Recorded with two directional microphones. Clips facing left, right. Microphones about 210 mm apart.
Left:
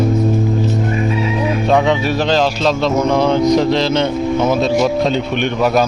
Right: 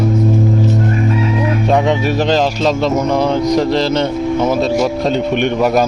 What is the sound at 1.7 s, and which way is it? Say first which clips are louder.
Speech: even; 15° right (ahead or behind).